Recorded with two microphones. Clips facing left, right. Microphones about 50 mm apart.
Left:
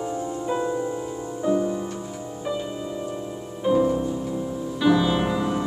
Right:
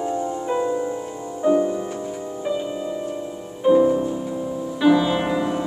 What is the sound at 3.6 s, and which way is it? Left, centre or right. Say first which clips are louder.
Music: right 5 dB; centre.